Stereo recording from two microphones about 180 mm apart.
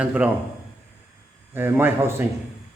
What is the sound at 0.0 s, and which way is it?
Speech, 5° right (ahead or behind).